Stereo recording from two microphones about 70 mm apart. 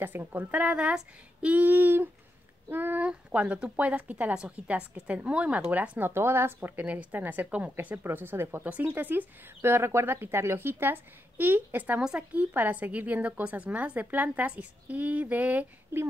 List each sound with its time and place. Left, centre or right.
0.0 s speech: right
3.1 s speech: centre; by 8.6 s right
8.6 s speech: right
9.6 s speech: right
12.0 s speech: centre
12.4 s speech: right
15.9 s speech: right